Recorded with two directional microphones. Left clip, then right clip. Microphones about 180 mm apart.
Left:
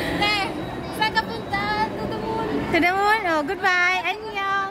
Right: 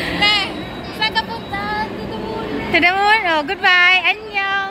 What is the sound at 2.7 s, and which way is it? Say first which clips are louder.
Speech: right 6 dB; 10° left (ahead or behind).